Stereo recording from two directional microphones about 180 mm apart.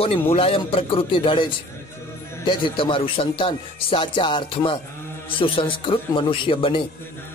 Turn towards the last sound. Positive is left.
turn(degrees=30)  # may be behind; listen again after turning